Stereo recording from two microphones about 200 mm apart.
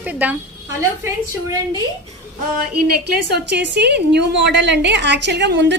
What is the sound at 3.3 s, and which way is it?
A woman's voice, 60° right (ahead or behind).